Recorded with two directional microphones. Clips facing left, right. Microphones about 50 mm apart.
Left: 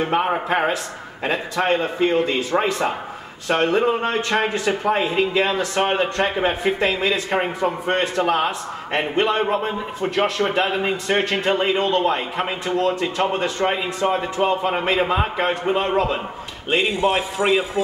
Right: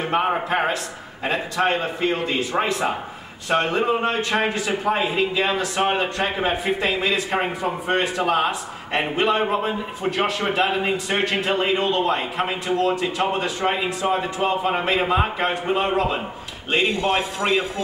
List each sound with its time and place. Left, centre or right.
0.0 s a man's voice: centre
17.4 s speech: centre